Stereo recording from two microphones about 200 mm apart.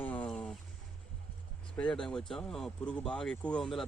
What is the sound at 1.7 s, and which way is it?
Speech, 5° left (ahead or behind).